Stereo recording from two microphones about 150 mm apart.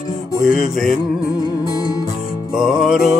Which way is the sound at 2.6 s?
5° right (ahead or behind).